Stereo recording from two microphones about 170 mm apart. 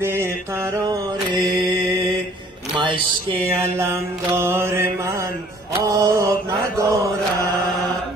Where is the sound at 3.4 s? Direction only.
15° right (ahead or behind).